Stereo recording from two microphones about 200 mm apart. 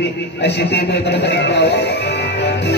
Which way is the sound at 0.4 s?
60° left (ahead or behind).